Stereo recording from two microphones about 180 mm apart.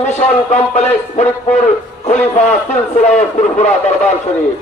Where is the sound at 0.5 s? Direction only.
40° left (ahead or behind).